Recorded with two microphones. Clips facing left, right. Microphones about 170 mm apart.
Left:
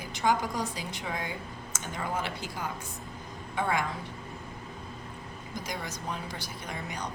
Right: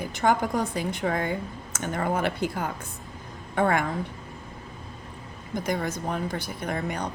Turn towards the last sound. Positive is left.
turn(degrees=-55)  # may be behind; listen again after turning